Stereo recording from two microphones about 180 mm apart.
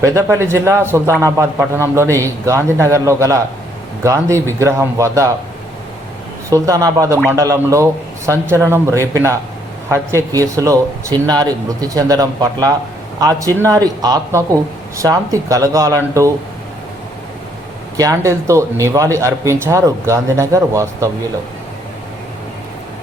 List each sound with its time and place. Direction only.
0.0 s a man's voice: 15° right (ahead or behind)
6.5 s a man's voice: 20° right (ahead or behind)
17.9 s a man's voice: 20° right (ahead or behind)